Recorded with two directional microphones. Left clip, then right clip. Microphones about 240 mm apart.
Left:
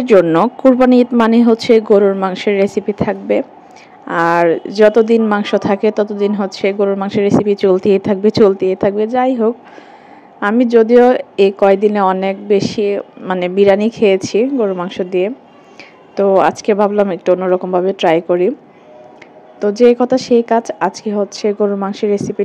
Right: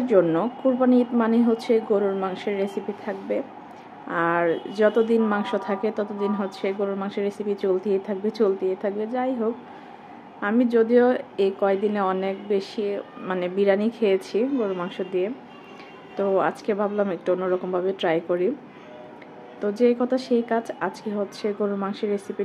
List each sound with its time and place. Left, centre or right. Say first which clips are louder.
0.0 s speech: left 10 dB; left
19.6 s speech: left 11 dB; left